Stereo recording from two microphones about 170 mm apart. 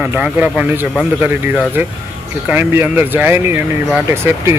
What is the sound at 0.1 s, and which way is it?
Speech, 10° right (ahead or behind).